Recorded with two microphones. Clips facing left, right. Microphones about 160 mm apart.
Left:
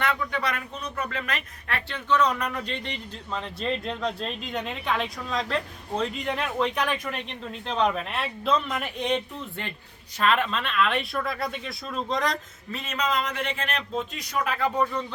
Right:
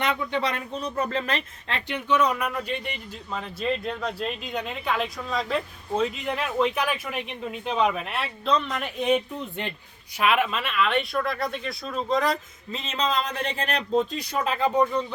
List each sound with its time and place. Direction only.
0.0 s speech: 20° right (ahead or behind); by 9.2 s 5° right (ahead or behind)
9.4 s a man's voice: 20° right (ahead or behind); by 12.4 s 5° right (ahead or behind)
12.7 s a man's voice: 25° right (ahead or behind)